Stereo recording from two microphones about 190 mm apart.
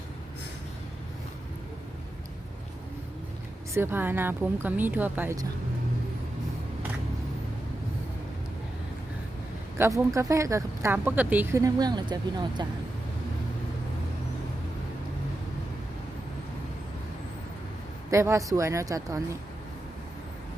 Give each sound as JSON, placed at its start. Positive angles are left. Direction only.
{"t": 3.8, "sound": "speech", "side_deg": -10}
{"t": 9.7, "sound": "speech", "side_deg": -15}
{"t": 18.1, "sound": "speech", "side_deg": -15}